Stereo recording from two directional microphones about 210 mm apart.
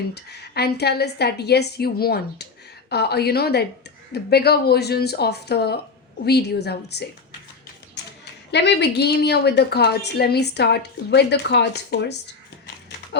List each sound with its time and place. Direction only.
0.1 s speech: 50° left (ahead or behind)